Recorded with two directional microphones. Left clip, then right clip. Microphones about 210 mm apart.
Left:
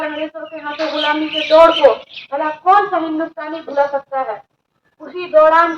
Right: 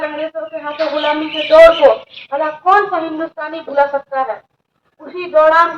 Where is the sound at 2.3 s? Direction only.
50° right (ahead or behind).